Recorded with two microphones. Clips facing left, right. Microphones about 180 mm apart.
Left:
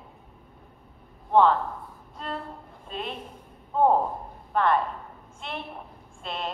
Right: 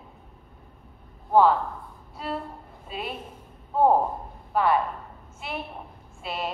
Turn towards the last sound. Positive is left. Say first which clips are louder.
# right 2 dB
turn(degrees=-5)  # may be behind; listen again after turning